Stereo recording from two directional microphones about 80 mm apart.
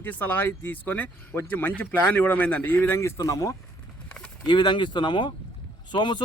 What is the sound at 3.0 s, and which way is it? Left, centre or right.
Speech, left.